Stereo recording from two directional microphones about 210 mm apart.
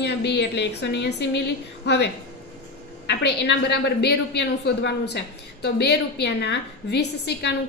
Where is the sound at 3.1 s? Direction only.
55° left (ahead or behind).